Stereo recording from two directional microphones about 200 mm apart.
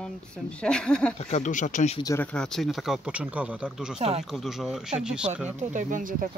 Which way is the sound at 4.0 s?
30° right (ahead or behind).